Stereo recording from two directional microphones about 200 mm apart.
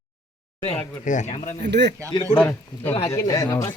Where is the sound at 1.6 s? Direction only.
60° right (ahead or behind).